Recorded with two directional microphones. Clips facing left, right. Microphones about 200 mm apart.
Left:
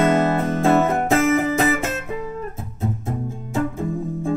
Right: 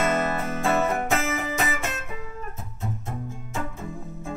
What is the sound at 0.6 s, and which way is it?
Music, 35° left (ahead or behind).